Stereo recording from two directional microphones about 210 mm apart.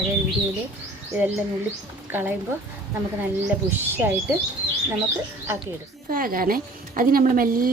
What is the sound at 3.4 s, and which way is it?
Speech, 10° right (ahead or behind).